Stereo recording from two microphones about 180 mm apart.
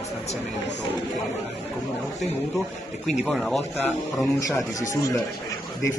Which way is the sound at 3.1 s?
Centre (ahead or behind).